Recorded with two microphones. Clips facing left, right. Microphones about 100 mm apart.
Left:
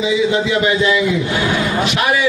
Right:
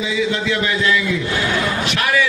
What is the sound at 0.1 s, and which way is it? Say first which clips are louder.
Speech: left 4 dB; 20° left (ahead or behind).